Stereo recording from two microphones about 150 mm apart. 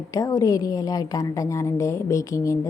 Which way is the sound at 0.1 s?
20° left (ahead or behind).